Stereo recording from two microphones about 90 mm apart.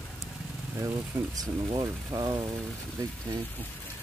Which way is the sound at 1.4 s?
55° right (ahead or behind).